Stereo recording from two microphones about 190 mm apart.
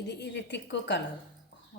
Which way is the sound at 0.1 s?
65° left (ahead or behind).